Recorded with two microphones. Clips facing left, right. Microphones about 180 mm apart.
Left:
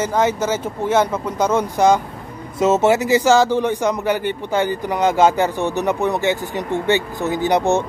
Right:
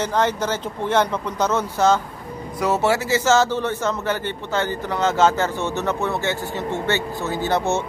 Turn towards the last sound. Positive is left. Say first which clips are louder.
# left 4 dB
turn(degrees=15)  # may be behind; listen again after turning